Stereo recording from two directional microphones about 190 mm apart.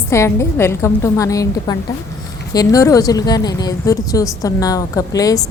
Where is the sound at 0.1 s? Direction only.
15° left (ahead or behind).